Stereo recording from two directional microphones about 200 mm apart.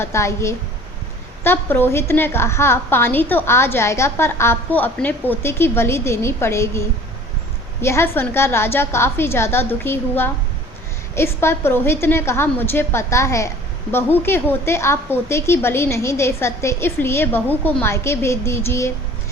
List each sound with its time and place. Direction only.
0.0 s a woman's voice: 15° left (ahead or behind)